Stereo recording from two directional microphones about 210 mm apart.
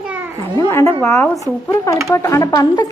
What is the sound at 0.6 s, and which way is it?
A child's voice, 15° left (ahead or behind).